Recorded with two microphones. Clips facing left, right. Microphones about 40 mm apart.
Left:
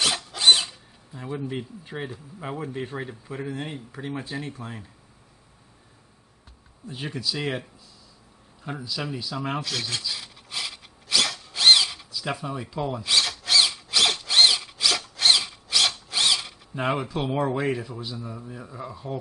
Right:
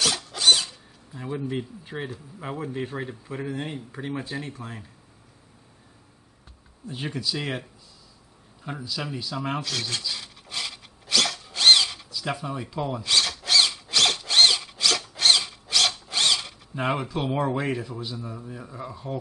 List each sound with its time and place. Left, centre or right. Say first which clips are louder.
0.4 s tools: left 2 dB; left
1.1 s speech: right 1 dB; centre
6.9 s speech: right 1 dB; centre
8.6 s a sound: left 1 dB; centre